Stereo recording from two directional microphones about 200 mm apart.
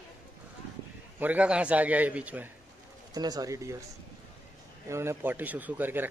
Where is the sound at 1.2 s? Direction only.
5° right (ahead or behind).